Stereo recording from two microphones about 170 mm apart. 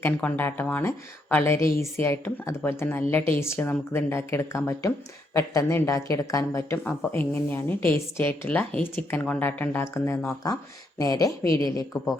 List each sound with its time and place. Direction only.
0.0 s speech: 10° left (ahead or behind)